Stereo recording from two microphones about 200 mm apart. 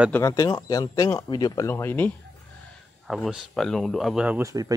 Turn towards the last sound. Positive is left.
turn(degrees=-15)  # may be behind; listen again after turning